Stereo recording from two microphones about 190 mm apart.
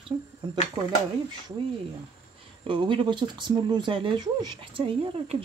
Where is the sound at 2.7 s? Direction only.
25° right (ahead or behind).